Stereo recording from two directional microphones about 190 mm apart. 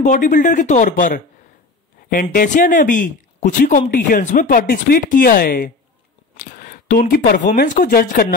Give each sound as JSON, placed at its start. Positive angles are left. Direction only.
{"t": 0.0, "sound": "speech", "side_deg": 40}
{"t": 2.3, "sound": "speech", "side_deg": 45}